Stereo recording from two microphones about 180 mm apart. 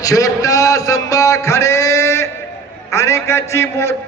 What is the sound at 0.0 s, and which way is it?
A man's voice, 20° left (ahead or behind).